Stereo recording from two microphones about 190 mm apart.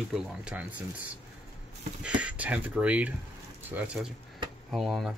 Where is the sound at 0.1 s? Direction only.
5° right (ahead or behind).